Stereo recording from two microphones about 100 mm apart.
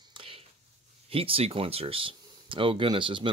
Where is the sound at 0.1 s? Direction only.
65° right (ahead or behind).